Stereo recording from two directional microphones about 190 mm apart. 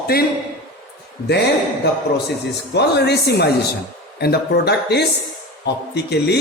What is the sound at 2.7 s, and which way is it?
A woman's voice, 60° left (ahead or behind).